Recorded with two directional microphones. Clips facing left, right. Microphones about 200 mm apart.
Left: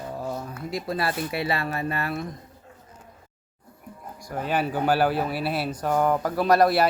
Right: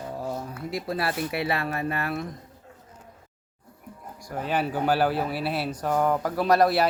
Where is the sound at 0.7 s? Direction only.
5° right (ahead or behind).